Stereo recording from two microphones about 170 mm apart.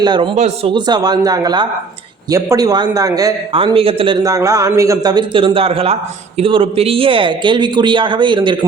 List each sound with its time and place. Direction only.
0.0 s a man's voice: 25° right (ahead or behind)
0.3 s speech: 40° right (ahead or behind)
0.7 s a man's voice: 25° right (ahead or behind)
4.2 s a man's voice: 20° right (ahead or behind)